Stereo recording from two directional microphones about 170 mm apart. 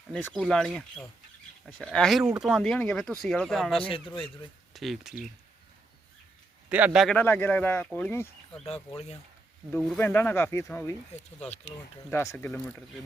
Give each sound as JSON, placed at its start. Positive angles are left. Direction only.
{"t": 0.1, "sound": "speech", "side_deg": 10}
{"t": 3.8, "sound": "speech", "side_deg": 30}
{"t": 4.7, "sound": "speech", "side_deg": 0}
{"t": 6.7, "sound": "speech", "side_deg": -10}
{"t": 7.2, "sound": "speech", "side_deg": 10}
{"t": 9.7, "sound": "speech", "side_deg": 10}
{"t": 12.1, "sound": "speech", "side_deg": 15}